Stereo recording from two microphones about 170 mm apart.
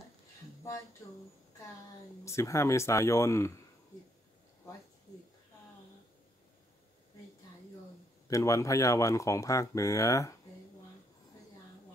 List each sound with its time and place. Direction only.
1.0 s speech: 20° left (ahead or behind)
2.2 s speech: 15° left (ahead or behind)
8.3 s speech: 20° left (ahead or behind)